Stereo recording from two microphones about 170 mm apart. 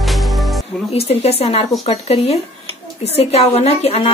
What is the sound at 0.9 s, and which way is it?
A woman's voice, 35° left (ahead or behind).